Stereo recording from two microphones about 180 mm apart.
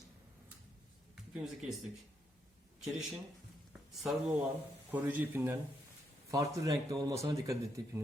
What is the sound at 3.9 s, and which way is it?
A man's voice, centre (ahead or behind).